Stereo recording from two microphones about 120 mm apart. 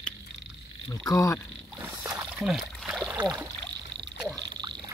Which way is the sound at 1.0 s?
30° left (ahead or behind).